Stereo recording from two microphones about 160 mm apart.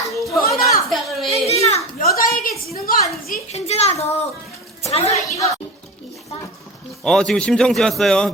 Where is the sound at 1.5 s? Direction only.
40° left (ahead or behind).